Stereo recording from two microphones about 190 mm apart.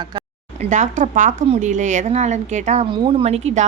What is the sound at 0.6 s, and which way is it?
A woman's voice, 40° right (ahead or behind).